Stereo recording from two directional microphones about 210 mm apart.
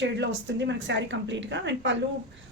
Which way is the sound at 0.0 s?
60° right (ahead or behind).